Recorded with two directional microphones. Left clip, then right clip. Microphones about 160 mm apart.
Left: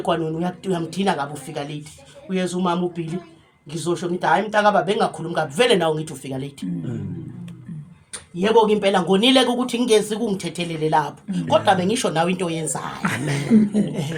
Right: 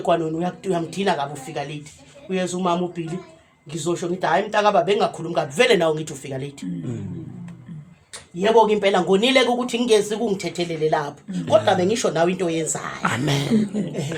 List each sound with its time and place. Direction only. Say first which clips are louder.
0.0 s speech: right 2 dB; 15° right (ahead or behind)
8.4 s speech: even; 15° right (ahead or behind)
13.2 s speech: left 2 dB; 25° right (ahead or behind)